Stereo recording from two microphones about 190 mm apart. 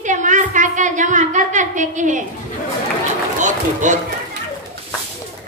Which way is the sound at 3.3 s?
40° right (ahead or behind).